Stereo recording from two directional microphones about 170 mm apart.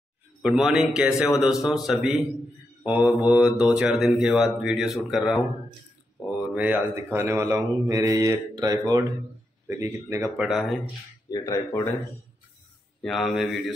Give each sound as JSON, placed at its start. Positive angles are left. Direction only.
{"t": 0.4, "sound": "speech", "side_deg": 0}
{"t": 3.2, "sound": "mantra", "side_deg": -10}
{"t": 3.7, "sound": "speech", "side_deg": 0}
{"t": 6.4, "sound": "mantra", "side_deg": -5}
{"t": 11.2, "sound": "speech", "side_deg": 20}
{"t": 13.0, "sound": "speech", "side_deg": 0}